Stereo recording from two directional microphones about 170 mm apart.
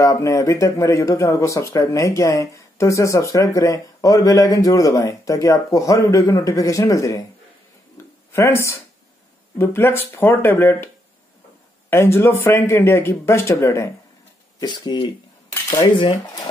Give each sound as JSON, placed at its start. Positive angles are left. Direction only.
{"t": 0.0, "sound": "speech", "side_deg": 20}
{"t": 8.0, "sound": "a sound", "side_deg": 15}
{"t": 8.3, "sound": "speech", "side_deg": 15}
{"t": 11.9, "sound": "speech", "side_deg": 15}